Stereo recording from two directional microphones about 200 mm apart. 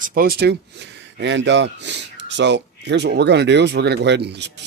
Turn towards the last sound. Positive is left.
turn(degrees=-55)  # may be behind; listen again after turning